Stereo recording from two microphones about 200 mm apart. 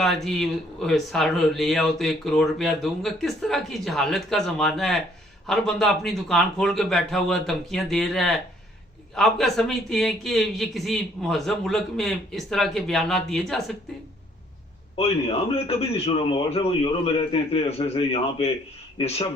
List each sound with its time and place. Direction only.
0.0 s speech: centre (ahead or behind)
14.9 s a man's voice: 30° left (ahead or behind)